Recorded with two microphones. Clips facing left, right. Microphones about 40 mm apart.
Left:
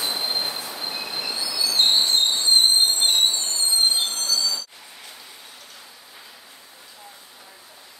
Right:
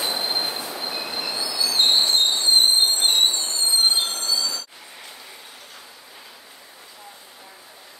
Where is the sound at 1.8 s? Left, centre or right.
Right.